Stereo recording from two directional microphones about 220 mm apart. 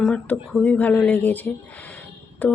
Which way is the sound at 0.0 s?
Centre (ahead or behind).